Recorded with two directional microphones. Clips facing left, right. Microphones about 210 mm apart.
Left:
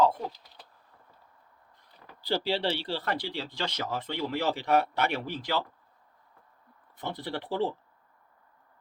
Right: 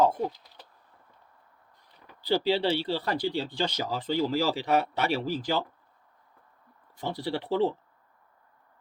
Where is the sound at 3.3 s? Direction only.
30° right (ahead or behind).